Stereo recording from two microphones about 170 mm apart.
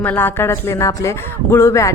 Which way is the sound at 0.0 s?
10° left (ahead or behind).